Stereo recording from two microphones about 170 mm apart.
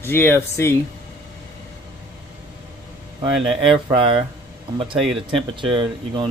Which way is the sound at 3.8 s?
30° right (ahead or behind).